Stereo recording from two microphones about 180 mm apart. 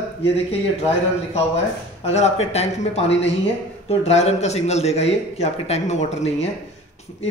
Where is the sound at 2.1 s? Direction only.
35° left (ahead or behind).